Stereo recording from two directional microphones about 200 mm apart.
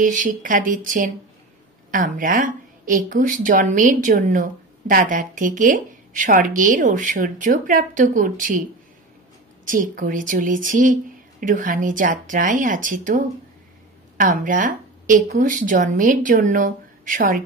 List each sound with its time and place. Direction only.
0.0 s speech: 40° right (ahead or behind)
9.7 s speech: 45° right (ahead or behind)